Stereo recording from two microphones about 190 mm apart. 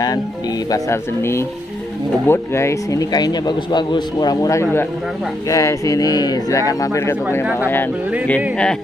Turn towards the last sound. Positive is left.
turn(degrees=15)  # may be behind; listen again after turning